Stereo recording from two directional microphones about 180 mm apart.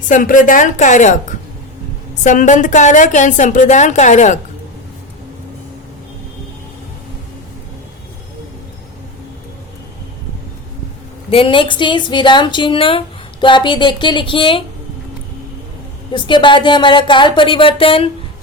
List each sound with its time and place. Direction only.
0.1 s speech: 45° left (ahead or behind)
11.3 s speech: 30° left (ahead or behind)
16.1 s speech: 25° left (ahead or behind)